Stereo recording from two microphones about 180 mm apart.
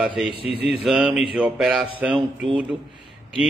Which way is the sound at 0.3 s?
30° left (ahead or behind).